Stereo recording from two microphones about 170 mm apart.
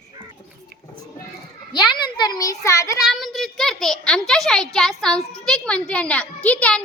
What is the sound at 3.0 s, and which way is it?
A child's voice, centre (ahead or behind).